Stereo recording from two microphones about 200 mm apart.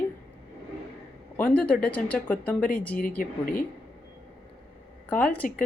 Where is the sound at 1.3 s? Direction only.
5° left (ahead or behind).